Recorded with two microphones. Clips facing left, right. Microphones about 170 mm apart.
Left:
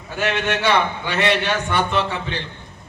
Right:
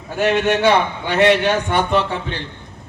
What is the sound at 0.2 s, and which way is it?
A man's voice, 40° right (ahead or behind).